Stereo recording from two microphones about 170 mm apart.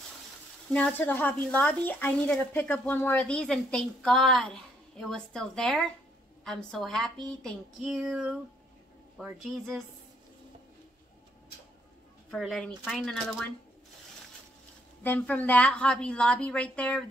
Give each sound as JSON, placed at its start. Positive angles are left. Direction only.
{"t": 0.7, "sound": "a woman's voice", "side_deg": 10}
{"t": 12.3, "sound": "speech", "side_deg": 0}
{"t": 15.0, "sound": "a woman's voice", "side_deg": 10}